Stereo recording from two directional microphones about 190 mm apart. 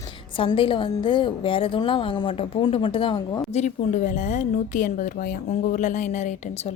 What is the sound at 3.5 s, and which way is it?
Speech, 40° left (ahead or behind).